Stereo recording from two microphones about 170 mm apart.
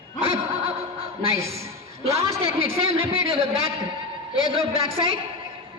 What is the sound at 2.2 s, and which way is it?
Speech, 15° right (ahead or behind).